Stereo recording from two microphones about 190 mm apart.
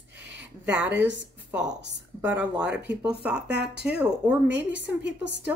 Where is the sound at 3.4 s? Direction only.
60° right (ahead or behind).